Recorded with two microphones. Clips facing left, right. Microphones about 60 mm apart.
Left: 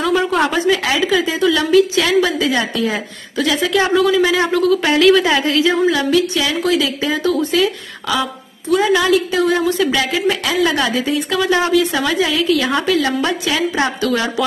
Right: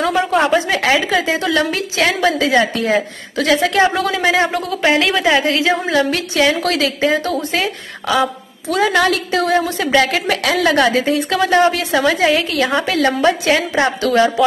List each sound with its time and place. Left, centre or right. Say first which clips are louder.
0.1 s a sound: right 1 dB; centre
0.7 s a woman's voice: even; right
2.8 s a woman's voice: right 3 dB; right
4.4 s a woman's voice: left 2 dB; right
5.5 s a woman's voice: left 1 dB; right
7.0 s a woman's voice: even; right
8.2 s a woman's voice: right 4 dB; right
10.1 s a woman's voice: even; right
11.3 s a woman's voice: right 1 dB; right
11.9 s a woman's voice: right 3 dB; right
13.7 s a woman's voice: right 3 dB; right